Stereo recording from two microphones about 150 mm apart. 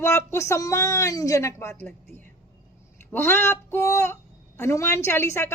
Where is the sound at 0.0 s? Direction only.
15° left (ahead or behind).